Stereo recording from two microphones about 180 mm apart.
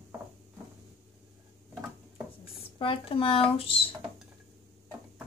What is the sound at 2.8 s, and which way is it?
Speech, 30° left (ahead or behind).